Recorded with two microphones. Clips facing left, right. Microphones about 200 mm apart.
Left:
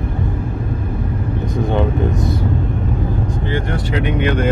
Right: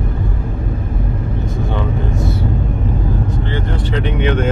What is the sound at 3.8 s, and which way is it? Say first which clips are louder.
Speech: even; 10° left (ahead or behind).